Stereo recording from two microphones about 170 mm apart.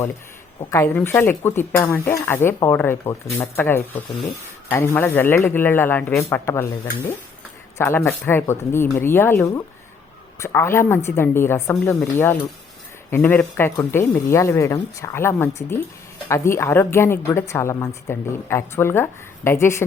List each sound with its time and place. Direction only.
0.6 s a woman's voice: 15° left (ahead or behind)
7.8 s a woman's voice: 15° left (ahead or behind)